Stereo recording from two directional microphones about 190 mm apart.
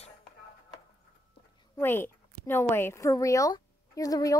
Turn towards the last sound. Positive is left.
turn(degrees=20)  # may be behind; listen again after turning